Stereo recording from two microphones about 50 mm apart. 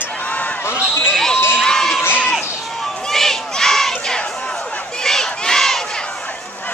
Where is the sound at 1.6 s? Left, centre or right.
Centre.